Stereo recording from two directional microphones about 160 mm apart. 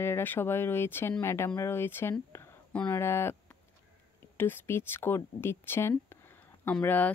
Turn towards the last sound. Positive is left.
turn(degrees=10)  # may be behind; listen again after turning